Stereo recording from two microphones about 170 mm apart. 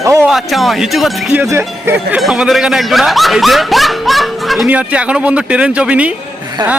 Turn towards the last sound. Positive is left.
turn(degrees=-25)  # may be behind; listen again after turning